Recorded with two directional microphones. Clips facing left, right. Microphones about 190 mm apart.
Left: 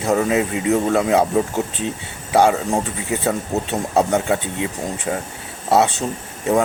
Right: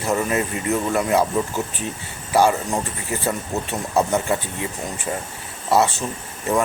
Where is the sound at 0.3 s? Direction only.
20° left (ahead or behind).